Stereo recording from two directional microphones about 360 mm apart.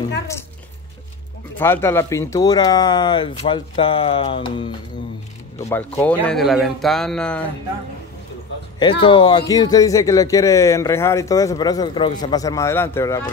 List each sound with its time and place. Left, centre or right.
1.6 s a man's voice: centre
9.0 s a man's voice: centre